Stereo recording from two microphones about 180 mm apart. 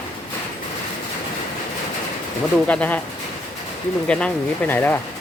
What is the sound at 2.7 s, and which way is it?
Speech, 10° left (ahead or behind).